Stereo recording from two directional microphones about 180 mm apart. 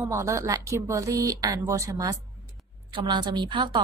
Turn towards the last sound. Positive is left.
turn(degrees=-25)  # may be behind; listen again after turning